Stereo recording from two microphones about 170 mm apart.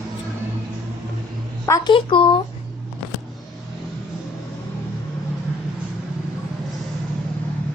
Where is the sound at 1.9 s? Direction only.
30° left (ahead or behind).